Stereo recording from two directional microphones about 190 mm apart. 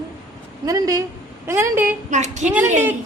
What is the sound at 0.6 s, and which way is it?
A woman's voice, 20° right (ahead or behind).